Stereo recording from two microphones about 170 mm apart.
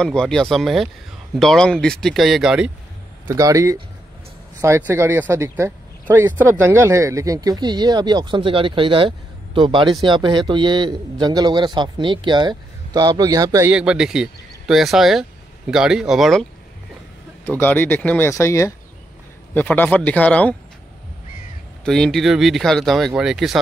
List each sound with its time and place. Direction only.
0.0 s speech: 5° left (ahead or behind)
3.3 s a man's voice: 20° right (ahead or behind)
13.7 s speech: 5° right (ahead or behind)
17.5 s speech: 10° left (ahead or behind)
21.8 s speech: 5° left (ahead or behind)